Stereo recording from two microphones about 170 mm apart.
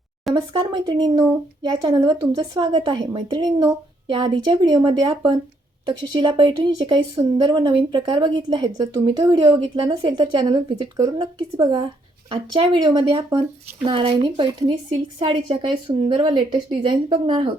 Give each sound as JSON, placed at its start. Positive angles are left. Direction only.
{"t": 0.3, "sound": "speech", "side_deg": -25}